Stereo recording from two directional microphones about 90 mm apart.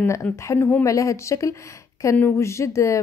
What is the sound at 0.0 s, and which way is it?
Speech, 30° left (ahead or behind).